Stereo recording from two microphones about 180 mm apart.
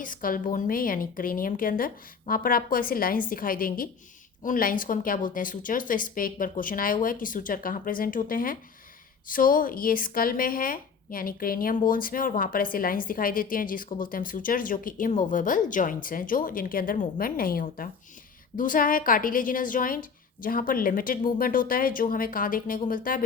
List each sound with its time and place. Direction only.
0.0 s a woman's voice: 50° left (ahead or behind)